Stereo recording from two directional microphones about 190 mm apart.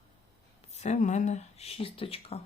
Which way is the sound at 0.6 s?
35° left (ahead or behind).